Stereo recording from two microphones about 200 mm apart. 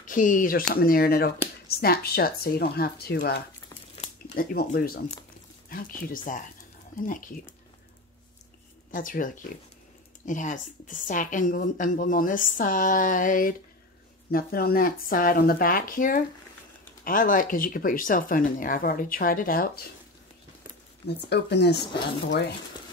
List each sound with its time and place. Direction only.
0.0 s speech: 40° left (ahead or behind)
8.9 s speech: 45° left (ahead or behind)
21.3 s speech: 55° left (ahead or behind)